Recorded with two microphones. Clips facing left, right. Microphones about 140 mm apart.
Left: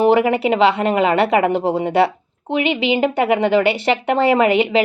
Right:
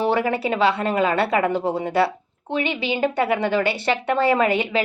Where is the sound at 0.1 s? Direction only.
20° left (ahead or behind).